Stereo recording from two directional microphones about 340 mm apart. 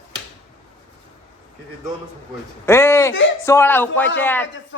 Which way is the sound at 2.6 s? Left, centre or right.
Centre.